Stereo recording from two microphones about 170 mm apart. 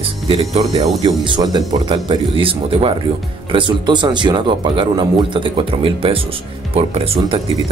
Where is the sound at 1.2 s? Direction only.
25° right (ahead or behind).